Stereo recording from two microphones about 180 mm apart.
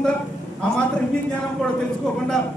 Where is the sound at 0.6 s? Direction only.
5° left (ahead or behind).